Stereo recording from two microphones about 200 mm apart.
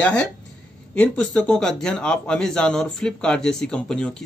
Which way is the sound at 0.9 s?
5° left (ahead or behind).